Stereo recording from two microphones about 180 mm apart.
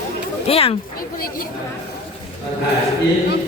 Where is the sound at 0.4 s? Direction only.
30° left (ahead or behind).